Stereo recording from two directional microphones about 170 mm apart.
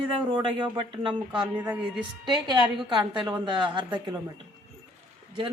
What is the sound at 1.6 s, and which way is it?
Speech, 10° right (ahead or behind).